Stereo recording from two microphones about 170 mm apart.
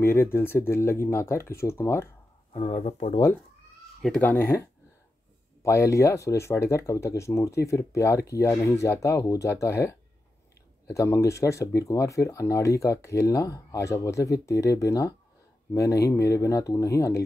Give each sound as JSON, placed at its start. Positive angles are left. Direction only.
{"t": 0.0, "sound": "speech", "side_deg": 15}
{"t": 2.5, "sound": "speech", "side_deg": 40}
{"t": 4.0, "sound": "speech", "side_deg": 5}